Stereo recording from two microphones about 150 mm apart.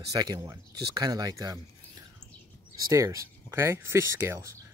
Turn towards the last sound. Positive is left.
turn(degrees=-20)  # may be behind; listen again after turning